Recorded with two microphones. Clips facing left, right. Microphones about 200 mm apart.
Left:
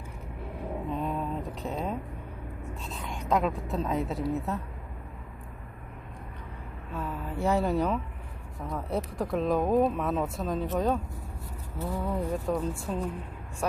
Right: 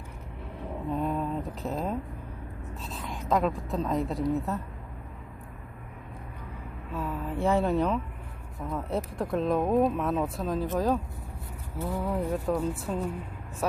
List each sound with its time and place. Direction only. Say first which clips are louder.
0.9 s a sound: right 4 dB; centre (ahead or behind)
2.8 s speech: right 2 dB; centre (ahead or behind)
6.9 s speech: right 2 dB; centre (ahead or behind)